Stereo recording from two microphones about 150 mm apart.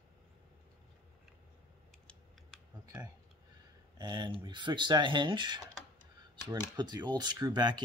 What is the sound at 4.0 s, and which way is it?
Speech, 30° right (ahead or behind).